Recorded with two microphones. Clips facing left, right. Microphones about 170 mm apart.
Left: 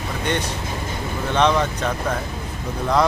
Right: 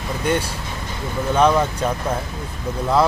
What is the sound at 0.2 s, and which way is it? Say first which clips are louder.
Speech: right 3 dB; 5° right (ahead or behind).